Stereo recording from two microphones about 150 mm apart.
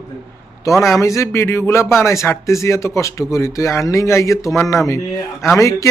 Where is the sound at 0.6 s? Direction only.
20° left (ahead or behind).